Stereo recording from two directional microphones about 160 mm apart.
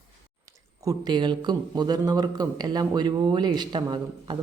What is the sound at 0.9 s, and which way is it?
A man's voice, 25° right (ahead or behind).